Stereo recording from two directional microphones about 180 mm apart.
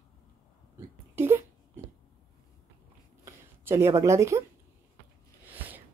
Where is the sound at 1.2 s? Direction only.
15° right (ahead or behind).